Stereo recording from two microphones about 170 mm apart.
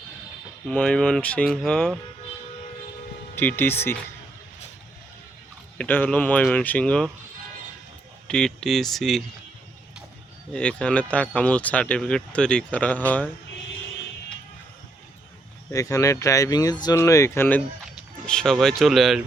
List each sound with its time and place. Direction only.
0.7 s speech: 5° left (ahead or behind)
3.3 s speech: 10° left (ahead or behind)
5.7 s speech: 10° left (ahead or behind)
8.3 s speech: 5° left (ahead or behind)
10.5 s speech: 5° left (ahead or behind)
15.7 s speech: 20° left (ahead or behind); by 19.2 s centre (ahead or behind)